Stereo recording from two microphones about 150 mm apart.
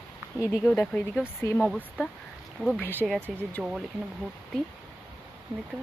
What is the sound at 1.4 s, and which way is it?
Speech, 15° left (ahead or behind).